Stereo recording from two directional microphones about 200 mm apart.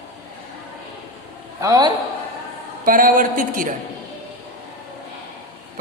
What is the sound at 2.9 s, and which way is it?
Speech, 45° right (ahead or behind).